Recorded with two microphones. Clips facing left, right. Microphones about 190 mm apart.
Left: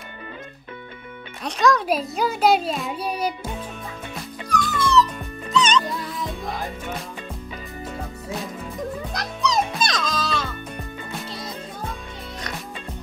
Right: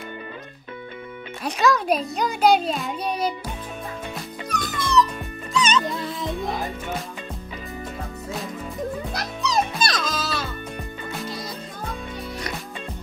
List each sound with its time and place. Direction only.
1.4 s a child's voice: 5° right (ahead or behind)
4.5 s music: 15° right (ahead or behind)
5.9 s music: 25° right (ahead or behind)
9.1 s music: 5° right (ahead or behind)